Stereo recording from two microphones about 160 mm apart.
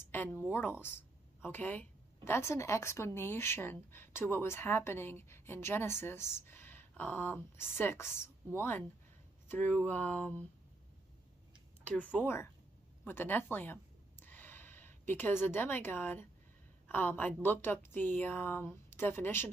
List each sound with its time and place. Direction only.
0.0 s a woman's voice: 15° left (ahead or behind)
11.9 s a woman's voice: 10° left (ahead or behind)